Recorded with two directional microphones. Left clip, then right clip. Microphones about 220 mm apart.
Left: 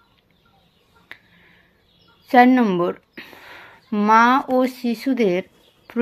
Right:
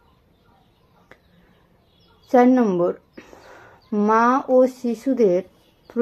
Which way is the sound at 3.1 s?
40° left (ahead or behind).